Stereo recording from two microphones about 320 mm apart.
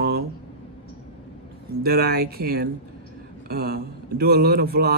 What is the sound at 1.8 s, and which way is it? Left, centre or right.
A man's voice, right.